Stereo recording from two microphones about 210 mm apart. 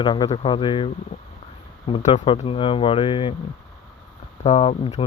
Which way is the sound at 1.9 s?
30° left (ahead or behind).